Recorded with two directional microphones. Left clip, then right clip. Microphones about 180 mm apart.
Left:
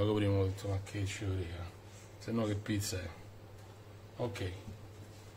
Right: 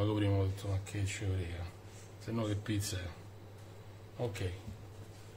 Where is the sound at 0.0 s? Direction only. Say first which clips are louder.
Left 2 dB; 35° left (ahead or behind).